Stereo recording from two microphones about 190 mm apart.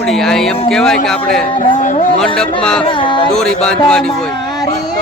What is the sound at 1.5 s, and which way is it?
Speech, 40° left (ahead or behind).